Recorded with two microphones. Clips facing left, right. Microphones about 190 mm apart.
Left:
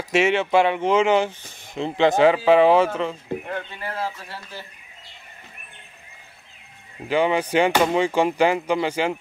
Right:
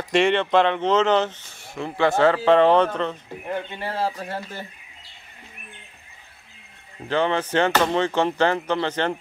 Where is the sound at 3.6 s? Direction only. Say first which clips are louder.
Right 3 dB; 30° right (ahead or behind).